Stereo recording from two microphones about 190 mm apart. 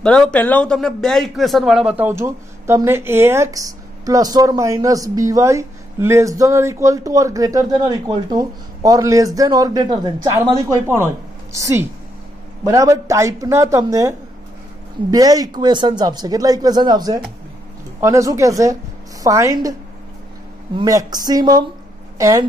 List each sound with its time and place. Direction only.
0.0 s a man's voice: 5° left (ahead or behind); by 19.7 s 15° right (ahead or behind)
20.7 s a man's voice: 20° right (ahead or behind)